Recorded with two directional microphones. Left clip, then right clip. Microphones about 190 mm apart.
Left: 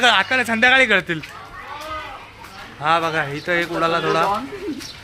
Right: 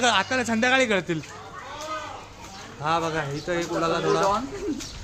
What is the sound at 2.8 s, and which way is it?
A man's voice, 5° left (ahead or behind).